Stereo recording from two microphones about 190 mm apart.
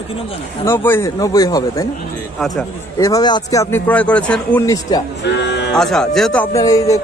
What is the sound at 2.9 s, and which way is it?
Speech, 15° left (ahead or behind).